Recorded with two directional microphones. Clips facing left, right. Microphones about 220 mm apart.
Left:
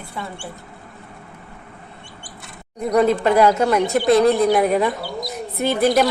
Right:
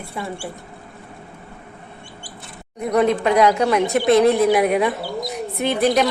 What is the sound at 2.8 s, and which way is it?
A woman's voice, centre (ahead or behind).